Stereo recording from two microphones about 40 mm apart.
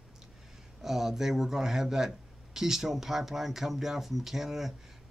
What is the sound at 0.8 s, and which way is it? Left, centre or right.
Speech, centre.